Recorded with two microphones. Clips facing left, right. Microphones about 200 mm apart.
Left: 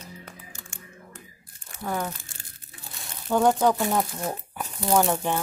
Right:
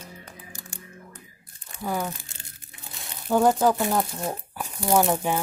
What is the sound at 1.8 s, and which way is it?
Speech, 5° right (ahead or behind).